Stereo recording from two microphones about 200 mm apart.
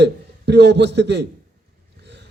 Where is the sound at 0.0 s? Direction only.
60° right (ahead or behind).